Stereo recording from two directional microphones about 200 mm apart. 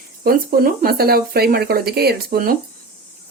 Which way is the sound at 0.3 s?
45° right (ahead or behind).